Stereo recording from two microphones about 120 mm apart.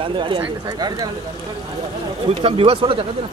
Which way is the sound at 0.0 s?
45° right (ahead or behind).